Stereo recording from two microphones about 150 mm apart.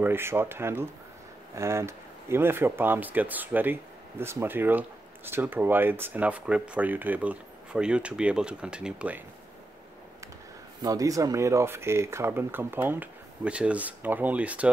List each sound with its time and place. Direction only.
0.0 s speech: 15° right (ahead or behind)
10.8 s speech: 25° right (ahead or behind)